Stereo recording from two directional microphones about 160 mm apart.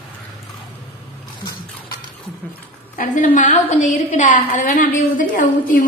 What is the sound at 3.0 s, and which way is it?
A woman's voice, 50° left (ahead or behind).